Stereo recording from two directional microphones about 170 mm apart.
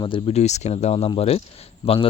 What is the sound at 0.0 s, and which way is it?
Speech, 30° left (ahead or behind).